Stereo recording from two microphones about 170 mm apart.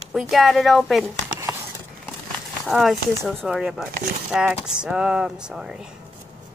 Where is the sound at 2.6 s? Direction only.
Centre (ahead or behind).